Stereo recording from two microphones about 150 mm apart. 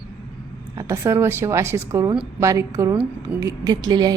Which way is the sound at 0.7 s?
20° right (ahead or behind).